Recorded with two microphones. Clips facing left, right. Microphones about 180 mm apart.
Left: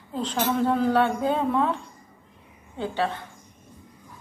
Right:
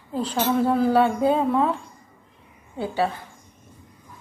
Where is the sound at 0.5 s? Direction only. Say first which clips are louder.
Right 3 dB; 10° right (ahead or behind).